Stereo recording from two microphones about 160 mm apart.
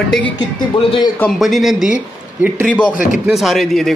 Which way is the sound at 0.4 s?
35° left (ahead or behind).